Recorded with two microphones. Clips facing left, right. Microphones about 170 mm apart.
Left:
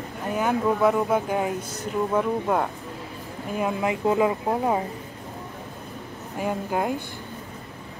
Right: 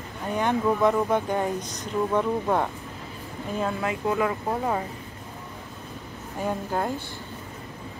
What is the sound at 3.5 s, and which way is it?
Speech, 15° left (ahead or behind).